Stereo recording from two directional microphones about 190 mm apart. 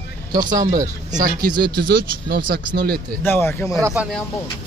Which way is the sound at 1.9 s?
55° right (ahead or behind).